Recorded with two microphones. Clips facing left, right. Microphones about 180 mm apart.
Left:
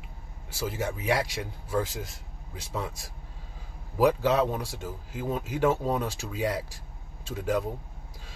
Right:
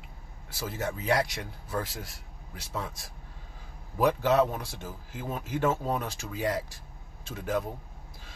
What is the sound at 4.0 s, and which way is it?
Speech, 10° left (ahead or behind).